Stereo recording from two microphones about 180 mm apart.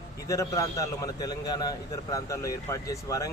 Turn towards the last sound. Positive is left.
turn(degrees=20)  # may be behind; listen again after turning